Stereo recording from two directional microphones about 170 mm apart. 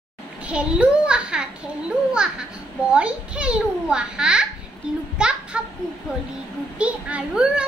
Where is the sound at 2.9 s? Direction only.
5° right (ahead or behind).